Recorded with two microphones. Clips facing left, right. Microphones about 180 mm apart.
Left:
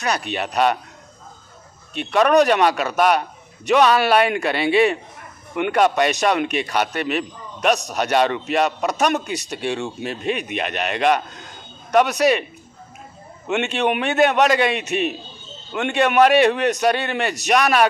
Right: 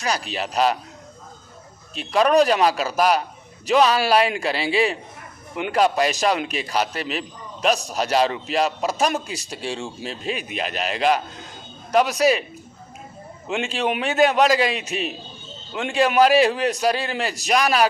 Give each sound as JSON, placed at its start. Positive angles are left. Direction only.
{"t": 0.0, "sound": "a man's voice", "side_deg": 60}
{"t": 2.0, "sound": "a man's voice", "side_deg": 60}
{"t": 13.5, "sound": "a man's voice", "side_deg": 65}